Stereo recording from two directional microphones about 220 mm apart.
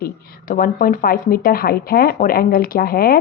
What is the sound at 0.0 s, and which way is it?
A woman's voice, 40° left (ahead or behind).